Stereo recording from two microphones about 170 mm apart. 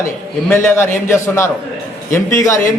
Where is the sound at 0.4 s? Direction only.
15° left (ahead or behind).